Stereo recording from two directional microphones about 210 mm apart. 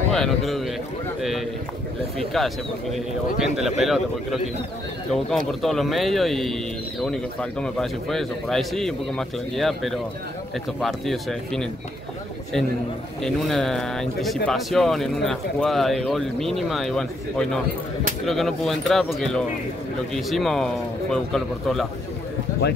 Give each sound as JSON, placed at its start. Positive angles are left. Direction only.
{"t": 0.1, "sound": "speech", "side_deg": 0}
{"t": 2.1, "sound": "speech", "side_deg": 0}
{"t": 5.5, "sound": "speech", "side_deg": 0}
{"t": 13.2, "sound": "speech", "side_deg": 0}
{"t": 22.6, "sound": "speech", "side_deg": 55}